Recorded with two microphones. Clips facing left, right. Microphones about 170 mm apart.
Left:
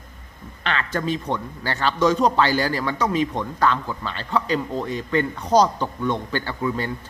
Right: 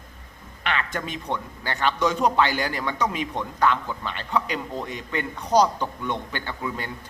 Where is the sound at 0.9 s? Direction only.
35° left (ahead or behind).